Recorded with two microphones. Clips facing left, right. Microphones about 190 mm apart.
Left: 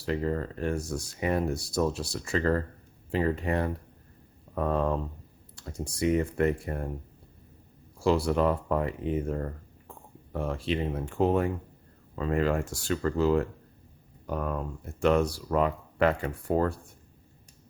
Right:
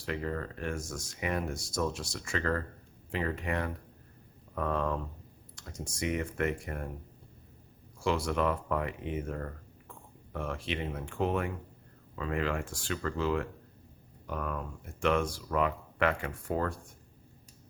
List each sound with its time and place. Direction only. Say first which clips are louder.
0.0 s speech: left 6 dB; 30° left (ahead or behind)
7.9 s speech: left 5 dB; 35° left (ahead or behind)